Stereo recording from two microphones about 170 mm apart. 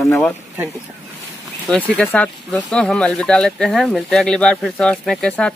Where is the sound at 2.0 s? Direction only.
10° left (ahead or behind).